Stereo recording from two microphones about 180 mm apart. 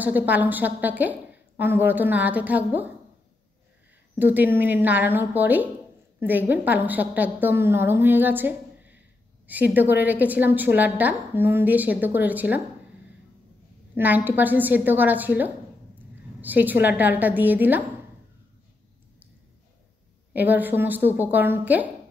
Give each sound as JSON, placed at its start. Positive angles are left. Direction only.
{"t": 0.0, "sound": "a woman's voice", "side_deg": -10}
{"t": 4.2, "sound": "a woman's voice", "side_deg": -10}
{"t": 13.9, "sound": "a woman's voice", "side_deg": -10}
{"t": 20.3, "sound": "a woman's voice", "side_deg": -10}